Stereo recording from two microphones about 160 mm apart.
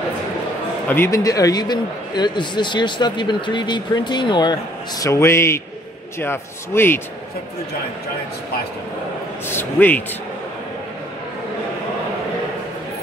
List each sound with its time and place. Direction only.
0.8 s a man's voice: 15° left (ahead or behind)
9.5 s a man's voice: 15° left (ahead or behind)